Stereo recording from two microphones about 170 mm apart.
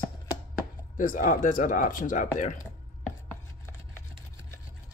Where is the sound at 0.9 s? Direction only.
55° left (ahead or behind).